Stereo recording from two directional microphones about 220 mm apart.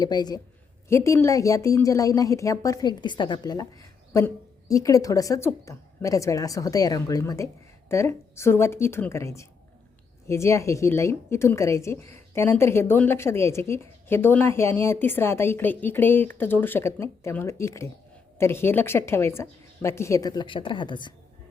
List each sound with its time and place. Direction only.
0.0 s a woman's voice: 20° left (ahead or behind)